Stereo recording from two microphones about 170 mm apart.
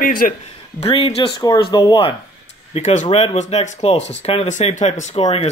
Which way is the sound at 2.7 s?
45° left (ahead or behind).